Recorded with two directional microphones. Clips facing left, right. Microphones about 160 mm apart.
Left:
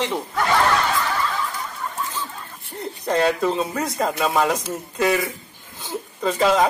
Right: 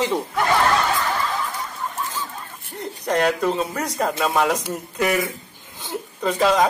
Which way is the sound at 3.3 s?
10° left (ahead or behind).